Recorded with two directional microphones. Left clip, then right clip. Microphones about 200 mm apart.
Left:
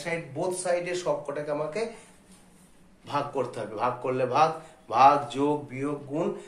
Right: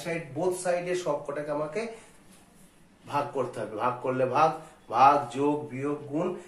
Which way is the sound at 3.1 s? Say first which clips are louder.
Even; 20° left (ahead or behind).